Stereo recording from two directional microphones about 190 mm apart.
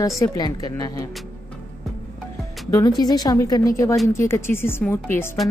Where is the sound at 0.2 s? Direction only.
20° left (ahead or behind).